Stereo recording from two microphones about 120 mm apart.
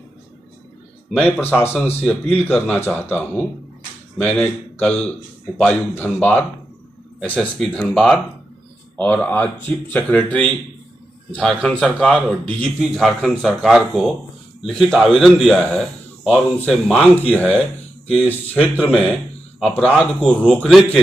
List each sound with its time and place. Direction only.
1.1 s a man's voice: 15° left (ahead or behind)
7.2 s a man's voice: 5° left (ahead or behind)